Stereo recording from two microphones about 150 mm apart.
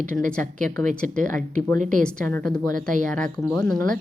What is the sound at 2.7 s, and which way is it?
Speech, 60° right (ahead or behind).